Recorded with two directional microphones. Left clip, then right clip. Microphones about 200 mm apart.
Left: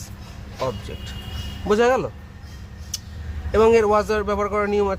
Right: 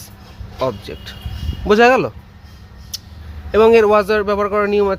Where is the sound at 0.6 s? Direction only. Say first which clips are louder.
Right 6 dB; 30° right (ahead or behind).